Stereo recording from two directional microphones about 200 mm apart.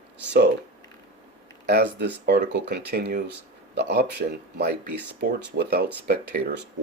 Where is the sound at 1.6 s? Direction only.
55° right (ahead or behind).